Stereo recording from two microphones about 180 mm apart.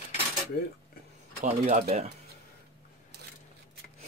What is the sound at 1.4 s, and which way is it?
Speech, 35° right (ahead or behind).